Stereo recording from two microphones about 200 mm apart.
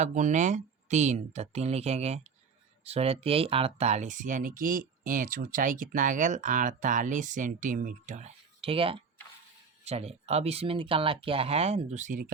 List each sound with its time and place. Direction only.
0.0 s speech: 40° right (ahead or behind)